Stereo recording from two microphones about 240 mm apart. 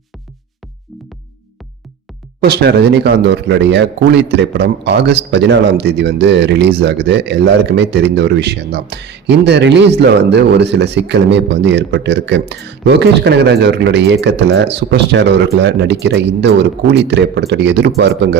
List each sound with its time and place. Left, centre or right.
2.4 s a man's voice: right